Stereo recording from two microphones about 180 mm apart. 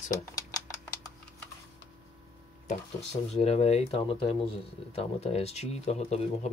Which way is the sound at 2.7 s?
35° left (ahead or behind).